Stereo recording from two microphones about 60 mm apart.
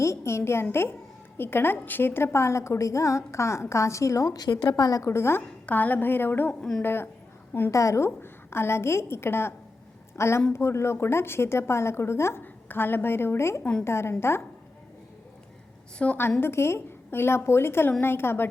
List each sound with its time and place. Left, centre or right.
0.0 s a woman's voice: left
5.1 s a woman's voice: left
5.6 s a woman's voice: left
6.5 s a woman's voice: centre
6.8 s a woman's voice: left
7.7 s a woman's voice: left
8.2 s a woman's voice: left
12.4 s a woman's voice: left
16.0 s a woman's voice: centre
16.4 s a woman's voice: left